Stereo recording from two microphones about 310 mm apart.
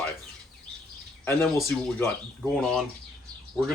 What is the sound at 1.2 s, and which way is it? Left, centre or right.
Speech, centre.